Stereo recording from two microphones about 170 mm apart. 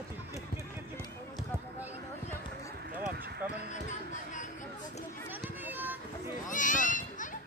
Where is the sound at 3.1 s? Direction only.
70° right (ahead or behind).